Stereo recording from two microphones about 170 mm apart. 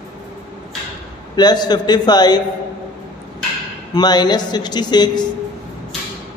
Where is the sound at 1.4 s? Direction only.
25° left (ahead or behind).